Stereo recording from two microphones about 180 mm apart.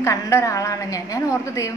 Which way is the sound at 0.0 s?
15° left (ahead or behind).